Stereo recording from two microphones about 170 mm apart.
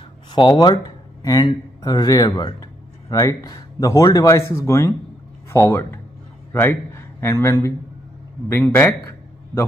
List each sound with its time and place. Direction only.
0.3 s a man's voice: 25° left (ahead or behind)